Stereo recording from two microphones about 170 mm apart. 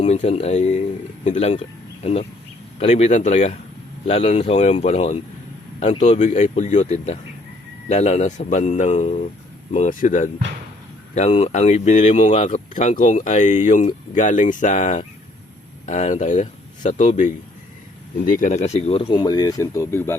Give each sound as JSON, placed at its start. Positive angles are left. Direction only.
{"t": 0.0, "sound": "speech", "side_deg": 40}
{"t": 2.7, "sound": "speech", "side_deg": 40}
{"t": 18.3, "sound": "speech", "side_deg": 50}